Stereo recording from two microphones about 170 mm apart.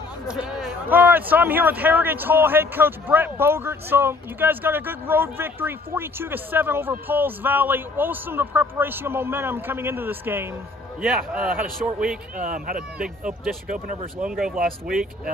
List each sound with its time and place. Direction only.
0.3 s a man's voice: 5° right (ahead or behind)
12.4 s speech: 55° right (ahead or behind)
13.0 s speech: 5° right (ahead or behind)